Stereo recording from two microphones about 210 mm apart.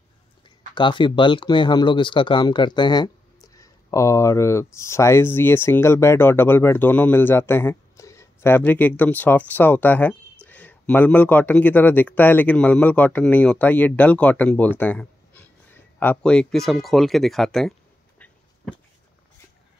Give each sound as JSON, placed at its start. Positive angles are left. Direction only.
{"t": 0.7, "sound": "speech", "side_deg": 20}